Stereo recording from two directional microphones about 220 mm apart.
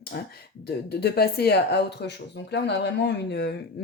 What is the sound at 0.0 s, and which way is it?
A woman's voice, 45° left (ahead or behind).